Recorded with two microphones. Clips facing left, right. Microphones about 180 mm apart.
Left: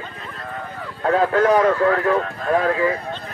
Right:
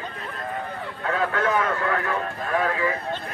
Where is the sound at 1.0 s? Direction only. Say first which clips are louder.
Left 8 dB; 35° left (ahead or behind).